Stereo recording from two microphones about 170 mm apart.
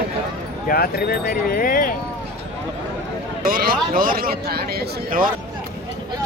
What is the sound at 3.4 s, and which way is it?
Speech, 55° right (ahead or behind).